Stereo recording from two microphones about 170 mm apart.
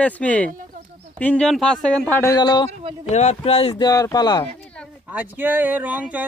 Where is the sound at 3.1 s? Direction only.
40° left (ahead or behind).